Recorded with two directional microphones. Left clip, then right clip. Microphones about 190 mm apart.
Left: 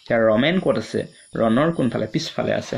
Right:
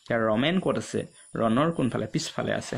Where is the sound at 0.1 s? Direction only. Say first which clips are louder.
Left 7 dB; 40° right (ahead or behind).